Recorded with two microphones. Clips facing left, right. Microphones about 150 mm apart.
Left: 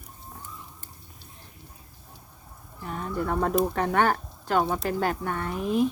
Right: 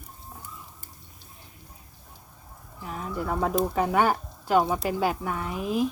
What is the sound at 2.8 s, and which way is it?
Speech, 5° right (ahead or behind).